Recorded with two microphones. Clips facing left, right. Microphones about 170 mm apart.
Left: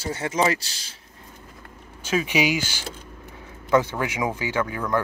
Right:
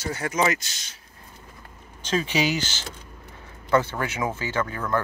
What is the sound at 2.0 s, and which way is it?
Speech, 10° left (ahead or behind).